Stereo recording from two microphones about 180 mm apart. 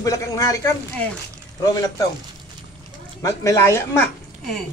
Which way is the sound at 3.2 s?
15° left (ahead or behind).